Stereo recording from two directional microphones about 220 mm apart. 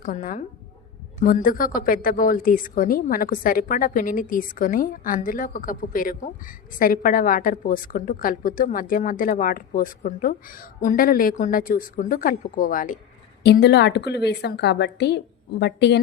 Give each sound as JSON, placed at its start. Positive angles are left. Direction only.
{"t": 0.0, "sound": "a woman's voice", "side_deg": 35}
{"t": 13.4, "sound": "a woman's voice", "side_deg": 50}